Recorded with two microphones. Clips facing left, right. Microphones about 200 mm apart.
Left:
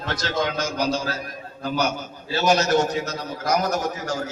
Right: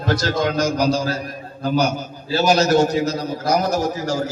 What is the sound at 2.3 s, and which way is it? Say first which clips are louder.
A man's voice: right 4 dB; 30° right (ahead or behind).